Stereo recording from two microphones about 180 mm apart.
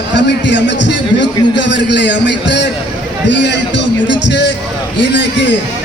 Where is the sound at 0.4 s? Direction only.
80° left.